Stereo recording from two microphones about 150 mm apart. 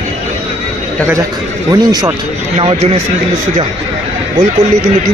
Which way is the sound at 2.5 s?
45° right (ahead or behind).